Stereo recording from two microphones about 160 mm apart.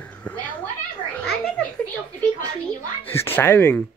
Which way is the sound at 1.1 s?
5° left (ahead or behind).